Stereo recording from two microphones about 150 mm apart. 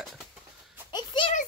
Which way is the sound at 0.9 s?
30° left (ahead or behind).